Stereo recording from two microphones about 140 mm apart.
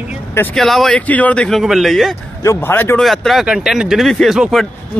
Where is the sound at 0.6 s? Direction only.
Centre (ahead or behind).